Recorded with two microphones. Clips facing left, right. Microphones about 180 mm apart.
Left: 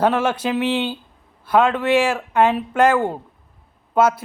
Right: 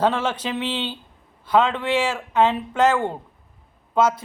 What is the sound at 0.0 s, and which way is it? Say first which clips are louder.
Speech: left 3 dB; 10° left (ahead or behind).